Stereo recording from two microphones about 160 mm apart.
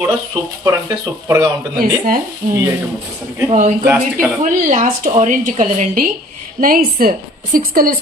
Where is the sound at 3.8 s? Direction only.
15° right (ahead or behind).